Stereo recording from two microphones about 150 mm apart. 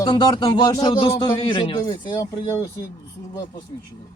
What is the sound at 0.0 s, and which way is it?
Speech, 30° left (ahead or behind).